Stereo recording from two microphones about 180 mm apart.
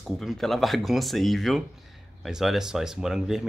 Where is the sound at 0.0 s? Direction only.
Centre (ahead or behind).